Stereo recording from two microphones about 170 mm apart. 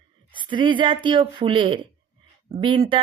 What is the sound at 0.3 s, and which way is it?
Speech, 30° right (ahead or behind).